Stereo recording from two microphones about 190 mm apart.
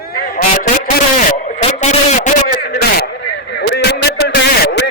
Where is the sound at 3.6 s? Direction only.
65° left (ahead or behind).